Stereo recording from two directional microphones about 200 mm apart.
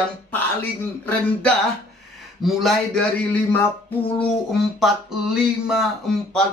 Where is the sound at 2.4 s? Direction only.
Centre (ahead or behind).